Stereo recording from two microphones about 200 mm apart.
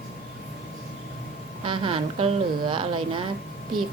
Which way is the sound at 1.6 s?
25° right (ahead or behind).